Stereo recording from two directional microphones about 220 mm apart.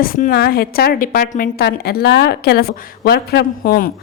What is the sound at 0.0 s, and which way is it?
A woman's voice, 40° left (ahead or behind).